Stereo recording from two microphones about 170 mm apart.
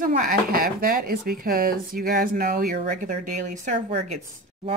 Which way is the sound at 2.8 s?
50° right (ahead or behind).